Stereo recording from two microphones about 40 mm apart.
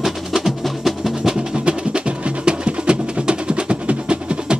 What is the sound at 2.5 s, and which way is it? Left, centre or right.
Music, right.